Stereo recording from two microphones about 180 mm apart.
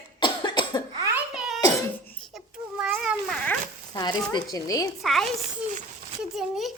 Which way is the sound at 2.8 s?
5° right (ahead or behind).